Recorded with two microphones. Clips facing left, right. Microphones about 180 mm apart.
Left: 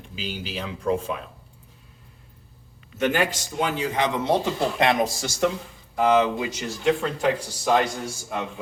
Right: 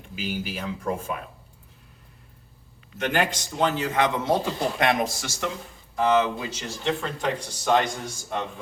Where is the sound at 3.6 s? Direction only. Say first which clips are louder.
Right 2 dB; 15° left (ahead or behind).